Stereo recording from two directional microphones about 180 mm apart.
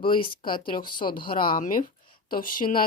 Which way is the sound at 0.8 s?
25° left (ahead or behind).